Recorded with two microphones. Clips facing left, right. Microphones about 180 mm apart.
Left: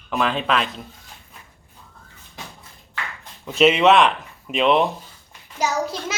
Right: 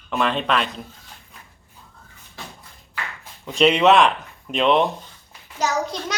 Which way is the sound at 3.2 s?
5° left (ahead or behind).